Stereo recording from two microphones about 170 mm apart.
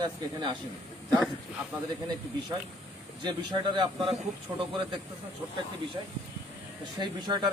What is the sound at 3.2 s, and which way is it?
Speech, 25° right (ahead or behind).